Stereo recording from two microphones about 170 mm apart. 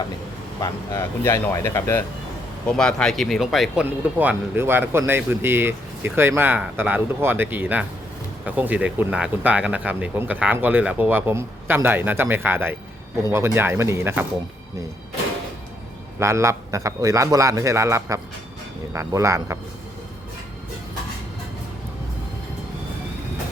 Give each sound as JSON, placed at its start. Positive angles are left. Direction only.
{"t": 0.6, "sound": "speech", "side_deg": 20}
{"t": 2.6, "sound": "speech", "side_deg": 5}
{"t": 16.1, "sound": "speech", "side_deg": -15}